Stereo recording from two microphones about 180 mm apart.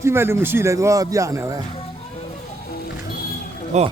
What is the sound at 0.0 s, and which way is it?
Speech, 15° right (ahead or behind).